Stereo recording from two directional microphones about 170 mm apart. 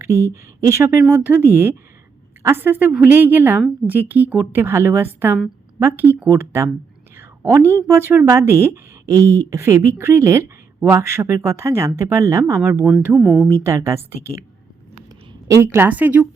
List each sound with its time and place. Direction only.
0.0 s a woman's voice: 15° right (ahead or behind)
13.1 s speech: centre (ahead or behind)
13.5 s a woman's voice: 15° right (ahead or behind)